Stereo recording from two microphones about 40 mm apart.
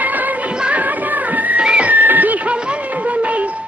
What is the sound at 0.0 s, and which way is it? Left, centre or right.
Music of bollywood, right.